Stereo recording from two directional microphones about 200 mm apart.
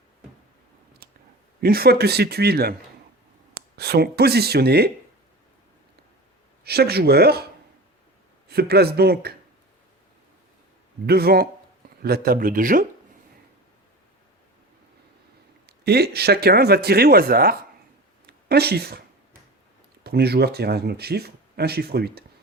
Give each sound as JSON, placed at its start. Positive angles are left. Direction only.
{"t": 1.6, "sound": "speech", "side_deg": -50}
{"t": 3.8, "sound": "speech", "side_deg": -55}
{"t": 6.7, "sound": "speech", "side_deg": -50}
{"t": 8.4, "sound": "speech", "side_deg": -50}
{"t": 11.0, "sound": "speech", "side_deg": -50}
{"t": 15.6, "sound": "speech", "side_deg": -55}
{"t": 20.1, "sound": "speech", "side_deg": -55}